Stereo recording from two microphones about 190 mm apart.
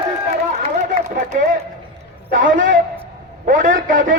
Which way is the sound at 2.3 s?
45° right (ahead or behind).